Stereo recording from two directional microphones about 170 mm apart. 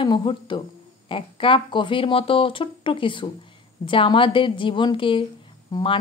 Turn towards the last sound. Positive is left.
turn(degrees=25)  # may be behind; listen again after turning